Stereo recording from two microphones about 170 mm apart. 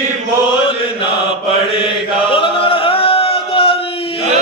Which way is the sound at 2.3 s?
30° left (ahead or behind).